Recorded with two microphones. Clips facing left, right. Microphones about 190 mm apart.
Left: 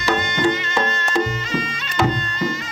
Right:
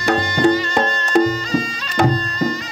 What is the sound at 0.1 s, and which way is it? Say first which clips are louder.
Music: right 4 dB; 40° right (ahead or behind).